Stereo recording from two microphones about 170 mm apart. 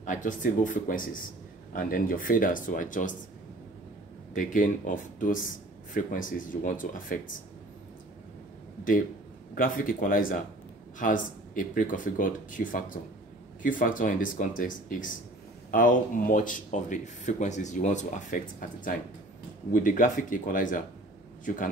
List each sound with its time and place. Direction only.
0.0 s speech: 50° left (ahead or behind)
4.3 s speech: 50° left (ahead or behind)
9.6 s speech: 55° left (ahead or behind)
19.7 s speech: 50° left (ahead or behind)